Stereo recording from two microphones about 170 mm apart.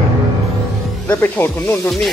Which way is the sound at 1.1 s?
10° left (ahead or behind).